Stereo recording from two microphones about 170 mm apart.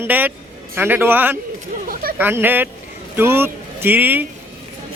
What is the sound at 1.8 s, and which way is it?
Chatter, 55° right (ahead or behind).